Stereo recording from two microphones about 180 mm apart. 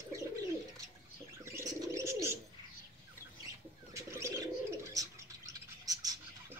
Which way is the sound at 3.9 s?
15° right (ahead or behind).